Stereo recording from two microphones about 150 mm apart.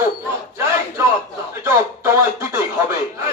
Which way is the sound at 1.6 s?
15° right (ahead or behind).